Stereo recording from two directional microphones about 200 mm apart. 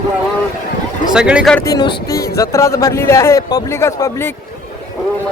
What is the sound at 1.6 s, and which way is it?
Speech, 20° left (ahead or behind).